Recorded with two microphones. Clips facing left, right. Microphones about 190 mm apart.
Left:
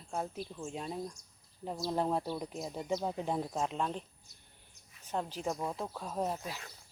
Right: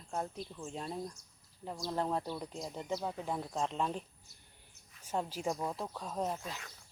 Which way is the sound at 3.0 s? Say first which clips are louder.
Left 4 dB; 20° left (ahead or behind).